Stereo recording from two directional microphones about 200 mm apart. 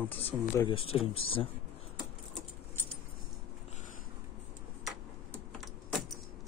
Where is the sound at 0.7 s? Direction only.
30° left (ahead or behind).